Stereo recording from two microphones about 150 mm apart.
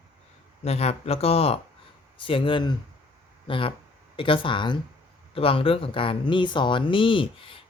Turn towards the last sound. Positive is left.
turn(degrees=35)  # may be behind; listen again after turning